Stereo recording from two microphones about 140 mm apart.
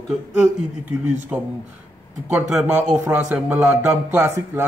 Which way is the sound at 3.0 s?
10° right (ahead or behind).